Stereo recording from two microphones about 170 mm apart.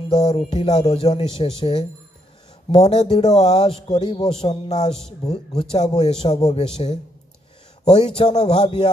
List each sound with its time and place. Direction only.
0.1 s a man's voice: 25° left (ahead or behind)
5.2 s speech: 35° left (ahead or behind)
8.2 s a man's voice: 25° left (ahead or behind)